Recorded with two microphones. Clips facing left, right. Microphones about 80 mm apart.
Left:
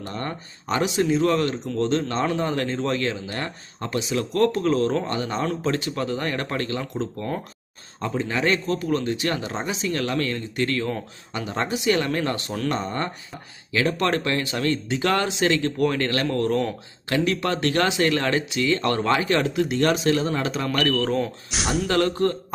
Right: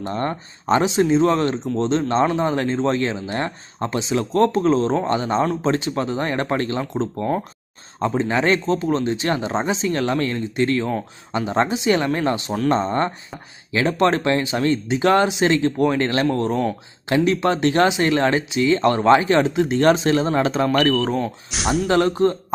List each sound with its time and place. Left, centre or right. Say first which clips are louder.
0.0 s speech: right 6 dB; right
12.6 s speech: right 7 dB; right
20.7 s speech: right 4 dB; centre
21.2 s speech: right 1 dB; centre
21.8 s speech: right 4 dB; centre